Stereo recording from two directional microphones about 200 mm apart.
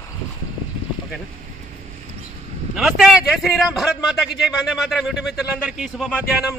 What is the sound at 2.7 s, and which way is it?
A man's voice, centre (ahead or behind).